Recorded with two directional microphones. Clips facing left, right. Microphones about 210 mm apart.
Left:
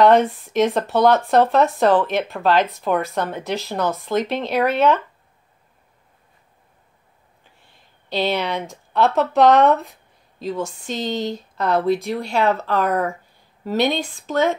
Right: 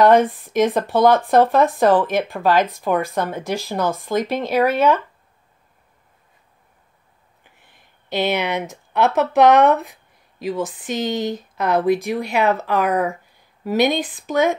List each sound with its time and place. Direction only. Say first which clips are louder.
0.0 s speech: right 1 dB; 15° right (ahead or behind)
7.6 s speech: even; 15° right (ahead or behind)